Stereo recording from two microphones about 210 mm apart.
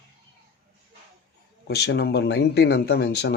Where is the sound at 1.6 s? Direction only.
50° left (ahead or behind).